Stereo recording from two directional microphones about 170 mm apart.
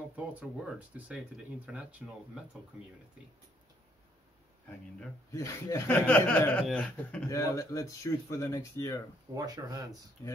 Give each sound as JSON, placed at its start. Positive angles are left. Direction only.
{"t": 0.1, "sound": "speech", "side_deg": -10}
{"t": 5.3, "sound": "speech", "side_deg": 20}
{"t": 6.0, "sound": "speech", "side_deg": 10}
{"t": 7.2, "sound": "speech", "side_deg": 20}
{"t": 9.3, "sound": "speech", "side_deg": -20}